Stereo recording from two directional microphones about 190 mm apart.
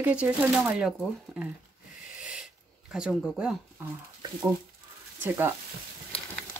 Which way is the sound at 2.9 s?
Centre (ahead or behind).